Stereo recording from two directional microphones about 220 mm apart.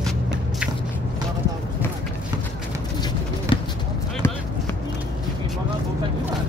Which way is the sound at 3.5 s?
25° left (ahead or behind).